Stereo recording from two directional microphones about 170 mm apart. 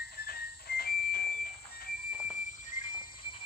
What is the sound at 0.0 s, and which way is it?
Whistle, 65° left (ahead or behind).